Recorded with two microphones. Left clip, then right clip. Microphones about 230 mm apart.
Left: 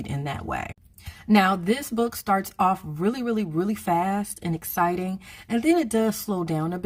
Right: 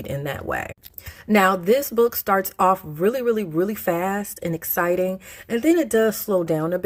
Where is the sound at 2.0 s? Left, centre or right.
Centre.